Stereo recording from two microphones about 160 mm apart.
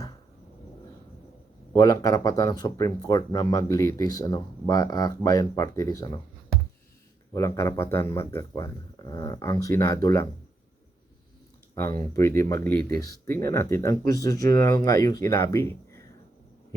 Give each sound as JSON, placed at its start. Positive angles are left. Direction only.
{"t": 1.7, "sound": "speech", "side_deg": 20}
{"t": 7.3, "sound": "speech", "side_deg": 20}
{"t": 11.7, "sound": "speech", "side_deg": 25}
{"t": 12.7, "sound": "speech", "side_deg": -70}
{"t": 13.0, "sound": "speech", "side_deg": 20}